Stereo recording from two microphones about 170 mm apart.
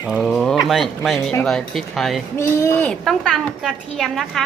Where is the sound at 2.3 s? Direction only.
15° left (ahead or behind).